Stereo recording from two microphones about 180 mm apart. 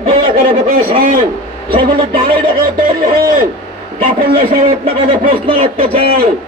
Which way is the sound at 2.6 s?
55° right (ahead or behind).